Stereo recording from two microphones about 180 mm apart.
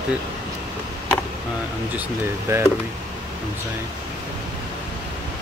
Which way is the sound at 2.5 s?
15° right (ahead or behind).